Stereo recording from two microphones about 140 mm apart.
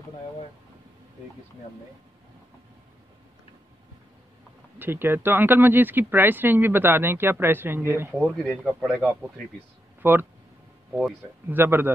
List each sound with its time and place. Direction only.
4.7 s speech: 15° right (ahead or behind)
8.2 s speech: 5° left (ahead or behind)
10.0 s speech: 15° right (ahead or behind)
10.9 s speech: centre (ahead or behind)
11.4 s speech: 15° right (ahead or behind)